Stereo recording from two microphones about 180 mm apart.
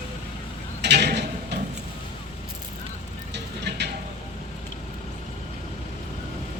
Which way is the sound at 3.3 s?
70° right (ahead or behind).